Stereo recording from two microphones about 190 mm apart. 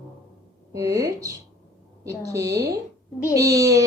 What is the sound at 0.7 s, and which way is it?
Speech, 15° right (ahead or behind).